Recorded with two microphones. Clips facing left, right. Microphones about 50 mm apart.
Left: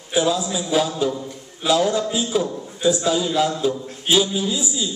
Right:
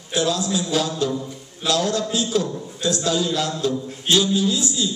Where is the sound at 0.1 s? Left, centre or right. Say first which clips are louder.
Left 2 dB; centre.